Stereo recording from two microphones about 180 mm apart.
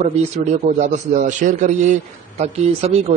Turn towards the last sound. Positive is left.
turn(degrees=-35)  # may be behind; listen again after turning